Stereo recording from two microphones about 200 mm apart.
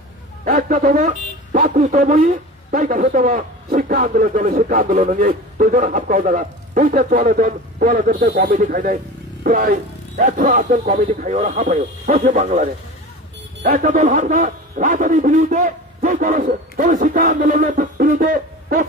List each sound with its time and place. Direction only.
0.5 s a man's voice: 40° right (ahead or behind)